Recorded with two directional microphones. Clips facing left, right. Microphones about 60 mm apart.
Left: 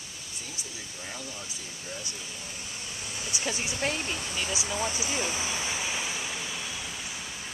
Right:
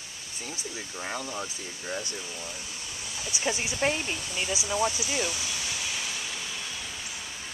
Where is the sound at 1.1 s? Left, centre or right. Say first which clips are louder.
Right 7 dB; right.